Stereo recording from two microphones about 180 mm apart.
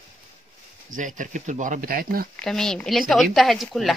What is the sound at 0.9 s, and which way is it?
Speech, 45° right (ahead or behind).